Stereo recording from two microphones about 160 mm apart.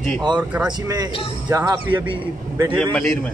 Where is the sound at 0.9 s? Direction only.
25° right (ahead or behind).